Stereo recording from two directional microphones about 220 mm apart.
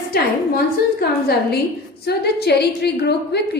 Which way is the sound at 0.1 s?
45° left (ahead or behind).